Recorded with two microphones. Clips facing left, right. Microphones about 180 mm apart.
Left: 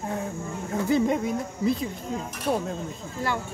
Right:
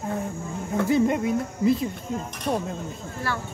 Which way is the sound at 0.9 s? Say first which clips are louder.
Right 1 dB; centre (ahead or behind).